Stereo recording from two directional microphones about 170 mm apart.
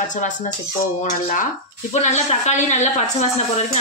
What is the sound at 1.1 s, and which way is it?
Speech, 50° left (ahead or behind).